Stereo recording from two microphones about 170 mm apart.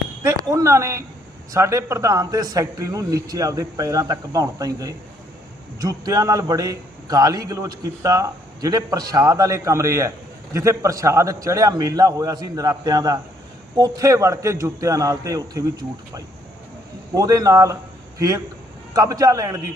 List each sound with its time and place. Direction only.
0.2 s a sound: 20° right (ahead or behind)
1.5 s a man's voice: 15° right (ahead or behind)
17.2 s a man's voice: 20° right (ahead or behind)